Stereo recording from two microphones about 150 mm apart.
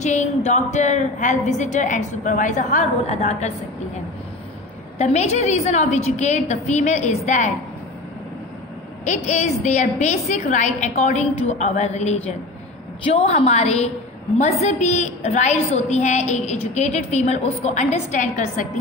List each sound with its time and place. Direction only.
0.0 s a woman's voice: 50° left (ahead or behind)
4.9 s a woman's voice: 45° left (ahead or behind)
9.0 s a woman's voice: 50° left (ahead or behind)